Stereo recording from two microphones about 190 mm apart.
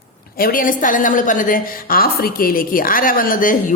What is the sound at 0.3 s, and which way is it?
A woman's voice, 50° left (ahead or behind).